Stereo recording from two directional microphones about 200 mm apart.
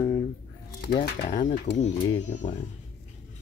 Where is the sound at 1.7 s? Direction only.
55° left (ahead or behind).